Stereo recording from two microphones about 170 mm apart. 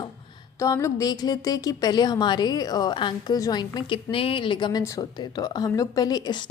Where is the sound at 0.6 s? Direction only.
15° left (ahead or behind).